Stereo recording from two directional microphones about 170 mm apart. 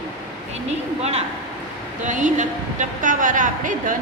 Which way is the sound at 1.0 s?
40° right (ahead or behind).